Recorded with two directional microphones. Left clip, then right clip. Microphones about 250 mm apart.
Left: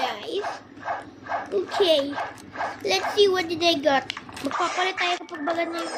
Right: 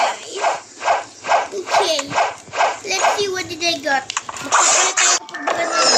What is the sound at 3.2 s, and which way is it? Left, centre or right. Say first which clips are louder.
Speech: left 1 dB; centre.